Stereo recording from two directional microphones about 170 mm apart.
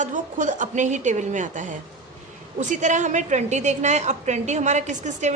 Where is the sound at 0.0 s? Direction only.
50° right (ahead or behind).